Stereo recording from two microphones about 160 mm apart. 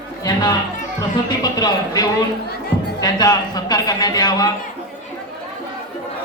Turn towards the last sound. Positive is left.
turn(degrees=25)  # may be behind; listen again after turning